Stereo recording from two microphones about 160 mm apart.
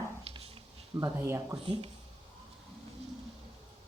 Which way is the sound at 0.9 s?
20° right (ahead or behind).